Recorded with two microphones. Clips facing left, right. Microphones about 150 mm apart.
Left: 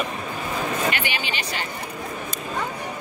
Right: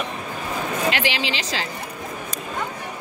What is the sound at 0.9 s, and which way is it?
Speech, 90° right.